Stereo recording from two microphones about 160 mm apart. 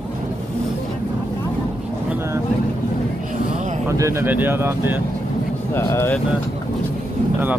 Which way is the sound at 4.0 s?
15° right (ahead or behind).